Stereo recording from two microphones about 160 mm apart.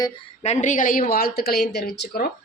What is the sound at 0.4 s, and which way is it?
Speech, 45° left (ahead or behind).